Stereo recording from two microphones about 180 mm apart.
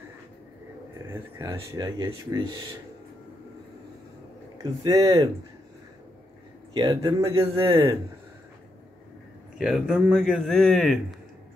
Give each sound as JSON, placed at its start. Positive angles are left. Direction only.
{"t": 1.0, "sound": "speech", "side_deg": -15}
{"t": 4.6, "sound": "speech", "side_deg": -20}
{"t": 6.7, "sound": "speech", "side_deg": -20}
{"t": 9.6, "sound": "a man's voice", "side_deg": -5}